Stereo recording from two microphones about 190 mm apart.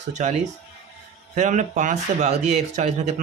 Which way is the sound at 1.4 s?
40° right (ahead or behind).